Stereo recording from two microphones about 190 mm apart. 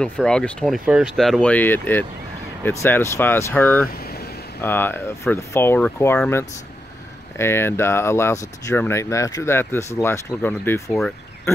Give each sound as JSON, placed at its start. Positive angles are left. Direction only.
{"t": 0.0, "sound": "speech", "side_deg": 5}
{"t": 4.0, "sound": "vehicle", "side_deg": 55}
{"t": 4.6, "sound": "speech", "side_deg": 10}